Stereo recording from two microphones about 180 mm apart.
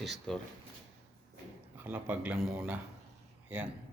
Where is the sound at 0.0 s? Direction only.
Centre (ahead or behind).